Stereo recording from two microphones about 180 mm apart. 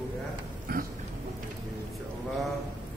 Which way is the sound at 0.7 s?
55° right (ahead or behind).